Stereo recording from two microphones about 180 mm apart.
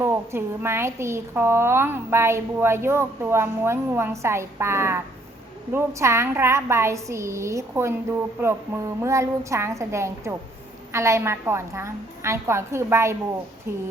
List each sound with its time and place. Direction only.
0.0 s a woman's voice: 15° right (ahead or behind)